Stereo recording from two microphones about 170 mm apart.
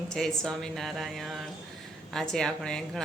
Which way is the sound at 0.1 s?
5° left (ahead or behind).